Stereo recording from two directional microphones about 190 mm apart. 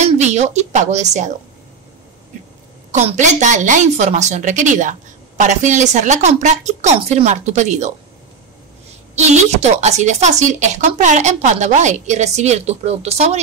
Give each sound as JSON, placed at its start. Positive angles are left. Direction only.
{"t": 0.0, "sound": "speech", "side_deg": -35}
{"t": 2.9, "sound": "speech", "side_deg": -35}
{"t": 9.1, "sound": "speech", "side_deg": -35}